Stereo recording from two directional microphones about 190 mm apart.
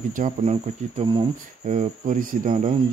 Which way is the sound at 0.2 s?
35° right (ahead or behind).